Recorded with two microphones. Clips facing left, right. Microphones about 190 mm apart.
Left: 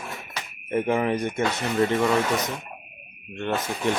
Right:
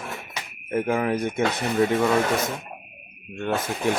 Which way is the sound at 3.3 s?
10° right (ahead or behind).